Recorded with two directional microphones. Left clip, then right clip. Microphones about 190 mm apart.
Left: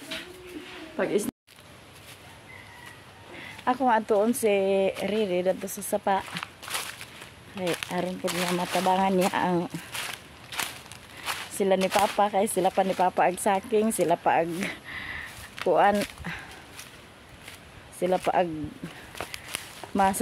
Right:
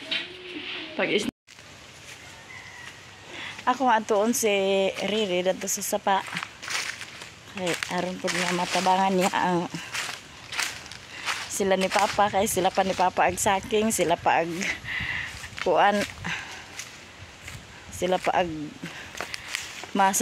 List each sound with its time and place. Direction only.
0.9 s speech: 10° right (ahead or behind)
3.3 s speech: centre (ahead or behind)
8.6 s speech: 15° right (ahead or behind)
8.9 s speech: centre (ahead or behind)
11.2 s speech: centre (ahead or behind)
15.6 s walk: centre (ahead or behind)
17.9 s speech: centre (ahead or behind)
19.1 s walk: 5° right (ahead or behind)